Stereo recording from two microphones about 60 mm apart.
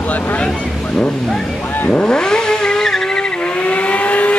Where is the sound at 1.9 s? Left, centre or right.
Centre.